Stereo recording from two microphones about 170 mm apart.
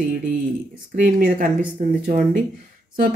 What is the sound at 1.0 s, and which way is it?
Speech, 55° right (ahead or behind).